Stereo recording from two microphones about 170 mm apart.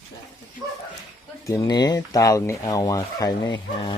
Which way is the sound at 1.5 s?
20° left (ahead or behind).